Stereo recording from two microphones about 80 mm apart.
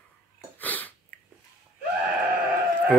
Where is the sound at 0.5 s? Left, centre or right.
Left.